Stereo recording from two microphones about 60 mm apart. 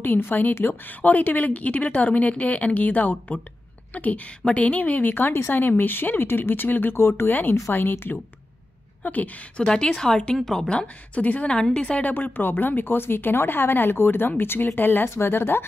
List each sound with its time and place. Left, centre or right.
0.0 s a woman's voice: left
9.0 s a woman's voice: left
9.6 s speech: centre
10.7 s a woman's voice: centre
12.1 s speech: left